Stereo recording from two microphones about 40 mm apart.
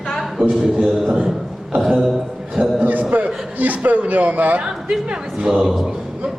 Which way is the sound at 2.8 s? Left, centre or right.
Right.